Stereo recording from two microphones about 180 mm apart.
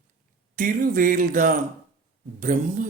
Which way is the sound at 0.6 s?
50° right (ahead or behind).